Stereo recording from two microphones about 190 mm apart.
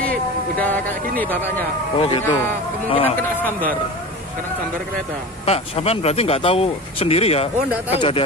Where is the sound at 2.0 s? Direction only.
30° left (ahead or behind).